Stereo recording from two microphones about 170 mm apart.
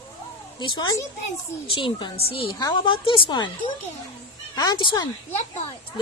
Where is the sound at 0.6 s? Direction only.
25° left (ahead or behind).